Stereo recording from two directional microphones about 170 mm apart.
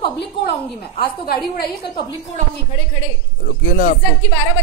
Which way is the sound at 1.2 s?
65° left (ahead or behind).